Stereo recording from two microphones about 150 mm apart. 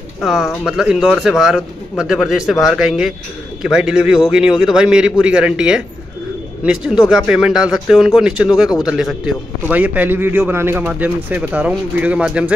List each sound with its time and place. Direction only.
0.2 s speech: 5° right (ahead or behind)